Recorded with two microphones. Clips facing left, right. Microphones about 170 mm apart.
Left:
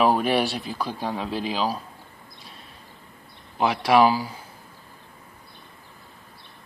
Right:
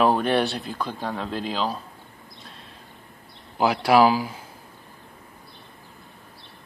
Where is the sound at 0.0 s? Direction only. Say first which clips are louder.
Even; 5° left (ahead or behind).